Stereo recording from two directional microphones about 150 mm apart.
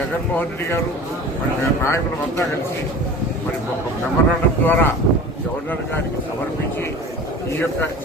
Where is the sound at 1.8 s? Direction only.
20° left (ahead or behind).